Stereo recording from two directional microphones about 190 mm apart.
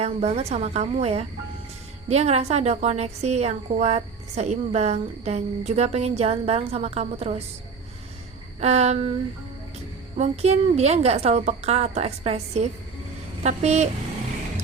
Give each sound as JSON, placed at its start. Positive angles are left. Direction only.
{"t": 0.0, "sound": "a woman's voice", "side_deg": -35}
{"t": 8.6, "sound": "a woman's voice", "side_deg": -35}
{"t": 10.2, "sound": "a woman's voice", "side_deg": -35}